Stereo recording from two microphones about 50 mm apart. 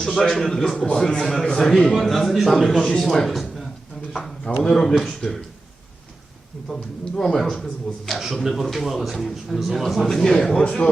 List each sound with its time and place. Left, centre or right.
0.0 s a man's voice: centre
3.2 s a man's voice: centre
7.2 s a man's voice: centre
8.1 s a man's voice: centre
10.6 s speech: left